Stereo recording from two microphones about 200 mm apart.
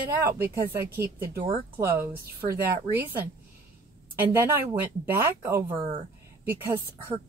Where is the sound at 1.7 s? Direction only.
10° right (ahead or behind).